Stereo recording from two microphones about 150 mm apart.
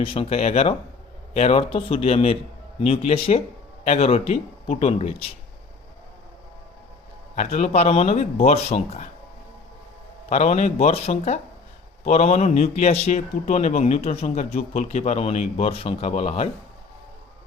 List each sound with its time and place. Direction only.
0.0 s a man's voice: 40° left (ahead or behind)
7.3 s a man's voice: 45° left (ahead or behind)
10.2 s a man's voice: 50° left (ahead or behind)